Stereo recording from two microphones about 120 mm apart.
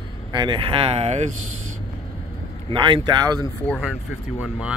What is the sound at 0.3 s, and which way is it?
Speech, 40° right (ahead or behind).